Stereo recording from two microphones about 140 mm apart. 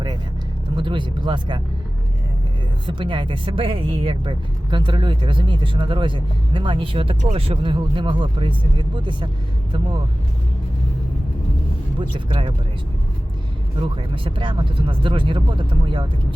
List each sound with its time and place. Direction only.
0.8 s speech: 35° right (ahead or behind)
2.8 s speech: 35° right (ahead or behind)
11.9 s speech: 40° right (ahead or behind)
13.8 s speech: 35° right (ahead or behind)